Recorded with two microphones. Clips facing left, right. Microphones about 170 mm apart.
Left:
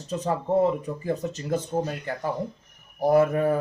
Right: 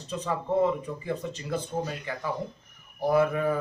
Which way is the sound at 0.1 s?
45° left (ahead or behind).